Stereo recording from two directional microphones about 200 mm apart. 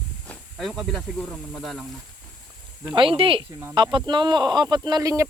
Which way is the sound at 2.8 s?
25° right (ahead or behind).